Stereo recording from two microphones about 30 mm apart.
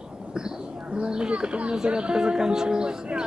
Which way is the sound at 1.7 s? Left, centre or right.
Right.